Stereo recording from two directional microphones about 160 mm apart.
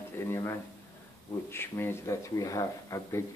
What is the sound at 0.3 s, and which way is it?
A man's voice, 20° left (ahead or behind).